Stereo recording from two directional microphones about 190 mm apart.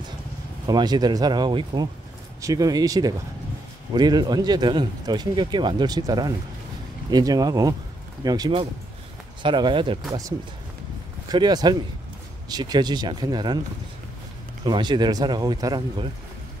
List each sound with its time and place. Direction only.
0.7 s speech: 20° right (ahead or behind)
11.2 s speech: 20° right (ahead or behind)
14.6 s speech: 25° right (ahead or behind)